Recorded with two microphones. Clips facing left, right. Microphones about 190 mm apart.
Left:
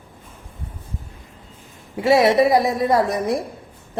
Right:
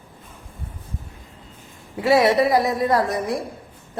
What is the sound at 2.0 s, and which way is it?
Speech, 25° left (ahead or behind).